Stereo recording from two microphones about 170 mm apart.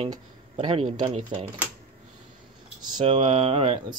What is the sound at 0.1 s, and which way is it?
Speech, 30° right (ahead or behind).